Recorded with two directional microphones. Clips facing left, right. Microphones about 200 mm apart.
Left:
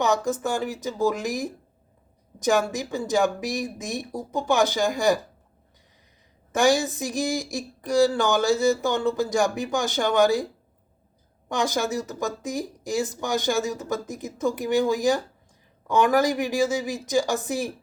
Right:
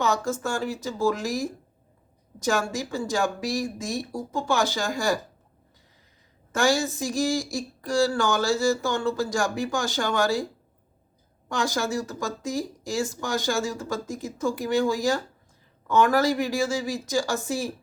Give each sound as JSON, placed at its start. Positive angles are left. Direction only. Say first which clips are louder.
{"t": 0.0, "sound": "speech", "louder": "left 2 dB", "side_deg": 15}
{"t": 6.5, "sound": "speech", "louder": "left 3 dB", "side_deg": 20}
{"t": 11.4, "sound": "speech", "louder": "left 2 dB", "side_deg": 20}